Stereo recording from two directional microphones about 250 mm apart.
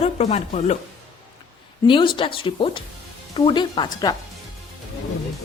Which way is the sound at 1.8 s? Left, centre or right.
Centre.